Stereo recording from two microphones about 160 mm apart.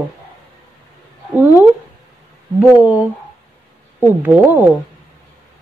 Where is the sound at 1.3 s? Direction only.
10° right (ahead or behind).